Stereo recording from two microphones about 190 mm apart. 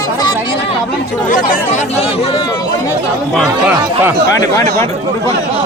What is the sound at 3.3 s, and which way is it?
Speech, 5° right (ahead or behind).